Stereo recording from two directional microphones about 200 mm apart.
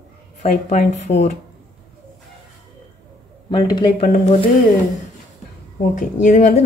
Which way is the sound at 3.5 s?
20° left (ahead or behind).